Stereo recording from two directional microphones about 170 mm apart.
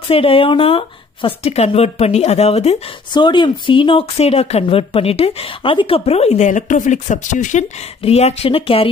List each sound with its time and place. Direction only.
0.1 s speech: 35° left (ahead or behind)
3.1 s speech: 25° left (ahead or behind)